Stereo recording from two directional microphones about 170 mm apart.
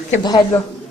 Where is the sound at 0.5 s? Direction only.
10° left (ahead or behind).